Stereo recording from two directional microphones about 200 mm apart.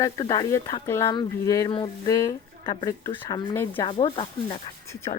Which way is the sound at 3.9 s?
25° left (ahead or behind).